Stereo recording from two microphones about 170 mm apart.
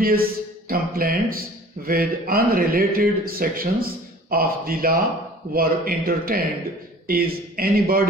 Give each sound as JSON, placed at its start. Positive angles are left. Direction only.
{"t": 0.0, "sound": "speech", "side_deg": -60}